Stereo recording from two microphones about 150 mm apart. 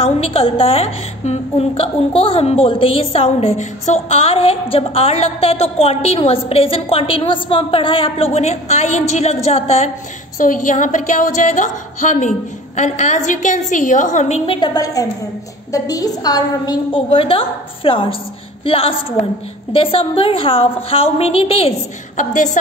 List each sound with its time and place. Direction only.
0.0 s a woman's voice: 40° left (ahead or behind)
10.4 s a woman's voice: 60° left (ahead or behind); by 21.7 s 40° left (ahead or behind)
22.1 s a woman's voice: 55° left (ahead or behind)